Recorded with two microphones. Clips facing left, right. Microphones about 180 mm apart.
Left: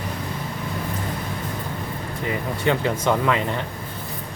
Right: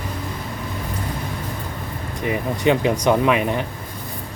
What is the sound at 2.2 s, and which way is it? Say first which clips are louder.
Speech: right 4 dB; 20° right (ahead or behind).